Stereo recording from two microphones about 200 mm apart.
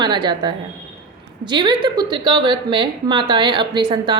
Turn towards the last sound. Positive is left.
turn(degrees=-20)  # may be behind; listen again after turning